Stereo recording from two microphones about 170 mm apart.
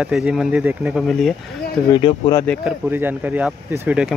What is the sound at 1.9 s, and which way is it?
Speech, 25° left (ahead or behind).